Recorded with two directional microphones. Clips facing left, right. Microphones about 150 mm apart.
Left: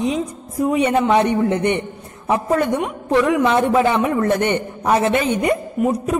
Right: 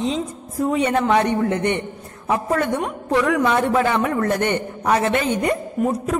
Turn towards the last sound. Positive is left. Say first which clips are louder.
# left 2 dB
turn(degrees=20)  # may be behind; listen again after turning